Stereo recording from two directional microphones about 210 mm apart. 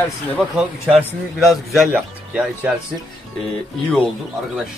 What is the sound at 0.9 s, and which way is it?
Speech, centre (ahead or behind).